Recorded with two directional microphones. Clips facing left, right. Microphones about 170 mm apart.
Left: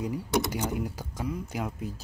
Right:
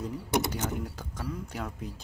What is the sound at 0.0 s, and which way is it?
Speech, 15° left (ahead or behind).